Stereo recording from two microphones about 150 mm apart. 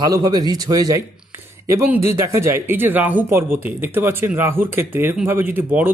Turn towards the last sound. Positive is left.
turn(degrees=-10)  # may be behind; listen again after turning